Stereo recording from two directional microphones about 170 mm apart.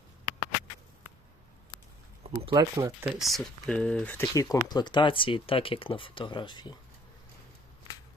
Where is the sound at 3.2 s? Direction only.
Centre (ahead or behind); by 6.7 s 25° left (ahead or behind).